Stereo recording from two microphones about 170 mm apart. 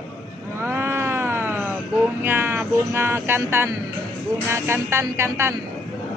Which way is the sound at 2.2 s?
15° right (ahead or behind).